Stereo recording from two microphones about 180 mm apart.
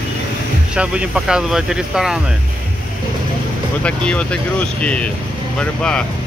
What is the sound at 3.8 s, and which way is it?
Speech, 5° left (ahead or behind).